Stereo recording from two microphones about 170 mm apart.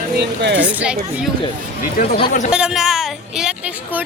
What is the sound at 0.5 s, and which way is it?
Speech, 10° right (ahead or behind).